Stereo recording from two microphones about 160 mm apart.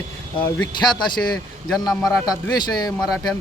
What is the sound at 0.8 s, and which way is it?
Speech, 30° left (ahead or behind).